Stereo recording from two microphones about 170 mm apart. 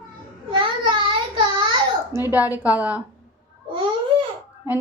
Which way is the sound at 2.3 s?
10° right (ahead or behind).